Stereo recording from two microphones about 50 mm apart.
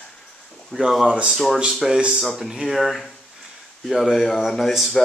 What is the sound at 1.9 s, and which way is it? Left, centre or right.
Speech, centre.